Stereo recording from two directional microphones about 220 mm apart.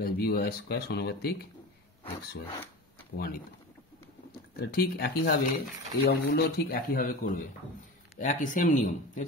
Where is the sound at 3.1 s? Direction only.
45° left (ahead or behind).